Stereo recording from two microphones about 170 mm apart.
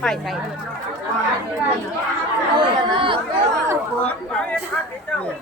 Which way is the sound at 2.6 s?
30° right (ahead or behind).